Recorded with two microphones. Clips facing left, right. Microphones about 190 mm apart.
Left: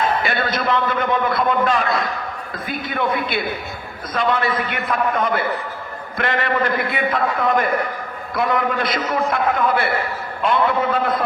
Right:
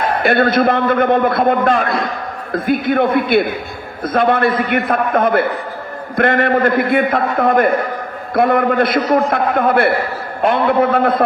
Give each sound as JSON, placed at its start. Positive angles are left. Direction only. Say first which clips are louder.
{"t": 0.0, "sound": "a man's voice", "louder": "right 7 dB", "side_deg": -55}